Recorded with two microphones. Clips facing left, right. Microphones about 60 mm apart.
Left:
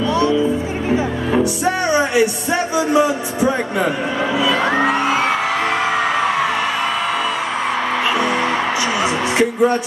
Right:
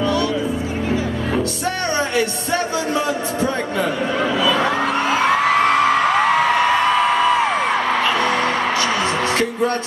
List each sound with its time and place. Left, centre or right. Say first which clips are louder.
0.9 s music: left 5 dB; centre
4.6 s music: left 2 dB; left
9.4 s music: left 4 dB; centre